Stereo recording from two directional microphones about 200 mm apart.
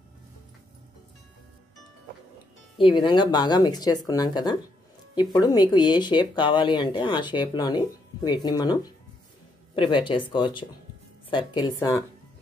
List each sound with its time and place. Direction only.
2.8 s speech: 25° left (ahead or behind)
9.8 s speech: 25° left (ahead or behind)